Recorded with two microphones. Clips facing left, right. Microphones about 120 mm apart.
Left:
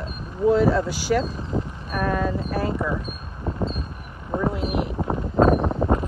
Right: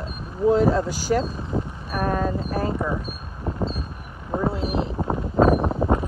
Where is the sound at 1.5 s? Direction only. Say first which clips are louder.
Even; 5° left (ahead or behind).